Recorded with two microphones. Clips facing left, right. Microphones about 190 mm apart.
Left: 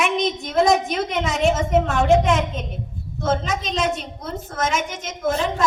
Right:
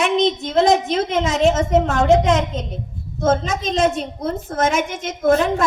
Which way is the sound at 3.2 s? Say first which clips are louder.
Right 4 dB; 45° right (ahead or behind).